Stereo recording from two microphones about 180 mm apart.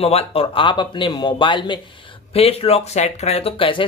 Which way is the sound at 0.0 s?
30° left (ahead or behind).